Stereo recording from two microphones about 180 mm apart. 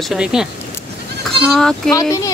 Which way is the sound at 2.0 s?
20° left (ahead or behind).